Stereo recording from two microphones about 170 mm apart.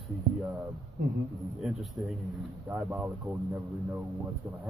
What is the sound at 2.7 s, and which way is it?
Speech, 15° right (ahead or behind).